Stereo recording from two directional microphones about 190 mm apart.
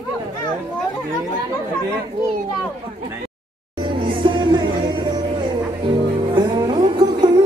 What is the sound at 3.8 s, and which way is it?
Music, 25° right (ahead or behind).